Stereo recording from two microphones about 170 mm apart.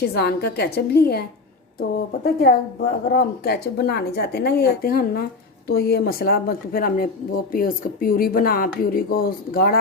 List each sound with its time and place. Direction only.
0.0 s a woman's voice: 70° left (ahead or behind)